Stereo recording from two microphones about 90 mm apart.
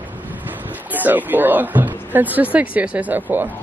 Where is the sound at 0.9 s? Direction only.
20° right (ahead or behind).